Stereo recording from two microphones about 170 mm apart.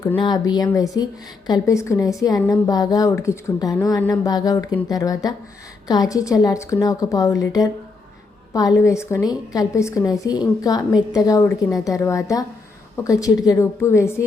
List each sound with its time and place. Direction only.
0.2 s a woman's voice: 25° left (ahead or behind)